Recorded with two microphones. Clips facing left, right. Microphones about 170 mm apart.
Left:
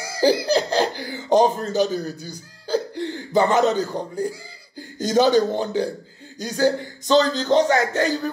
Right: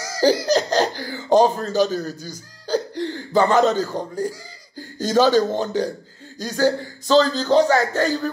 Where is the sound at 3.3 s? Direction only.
20° left (ahead or behind).